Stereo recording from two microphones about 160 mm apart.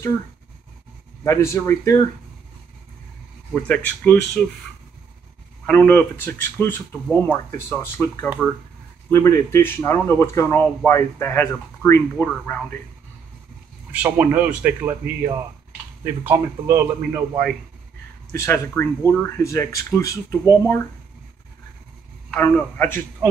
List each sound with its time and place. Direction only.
1.2 s speech: 15° left (ahead or behind)
3.5 s speech: 10° left (ahead or behind)
5.7 s speech: 10° left (ahead or behind)
13.9 s speech: 10° right (ahead or behind)
18.3 s speech: 15° left (ahead or behind)
22.3 s speech: 15° left (ahead or behind)